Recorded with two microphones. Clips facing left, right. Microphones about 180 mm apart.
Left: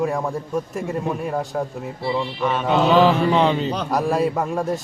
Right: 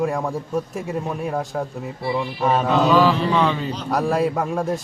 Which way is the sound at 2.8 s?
20° left (ahead or behind).